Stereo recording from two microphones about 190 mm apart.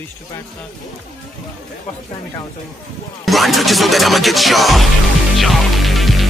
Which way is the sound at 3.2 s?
Centre (ahead or behind).